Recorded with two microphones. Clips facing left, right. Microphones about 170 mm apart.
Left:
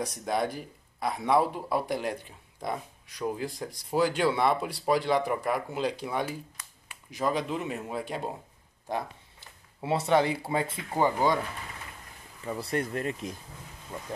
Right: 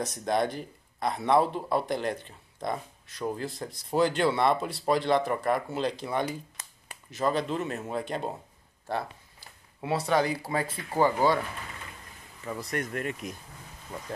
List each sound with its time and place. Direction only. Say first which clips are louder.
0.0 s speech: right 2 dB; 10° left (ahead or behind)
12.4 s speech: left 2 dB; 30° left (ahead or behind)